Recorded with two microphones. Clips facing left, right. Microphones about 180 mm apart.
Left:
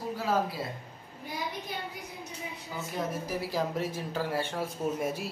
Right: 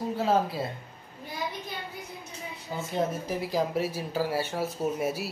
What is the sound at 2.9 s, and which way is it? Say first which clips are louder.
Speech: right 4 dB; 25° right (ahead or behind).